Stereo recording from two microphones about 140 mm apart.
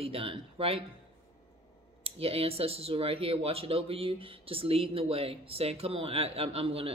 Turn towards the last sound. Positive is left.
turn(degrees=-45)  # may be behind; listen again after turning